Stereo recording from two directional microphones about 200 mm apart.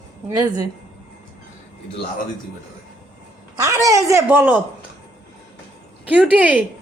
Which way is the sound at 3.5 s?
15° right (ahead or behind).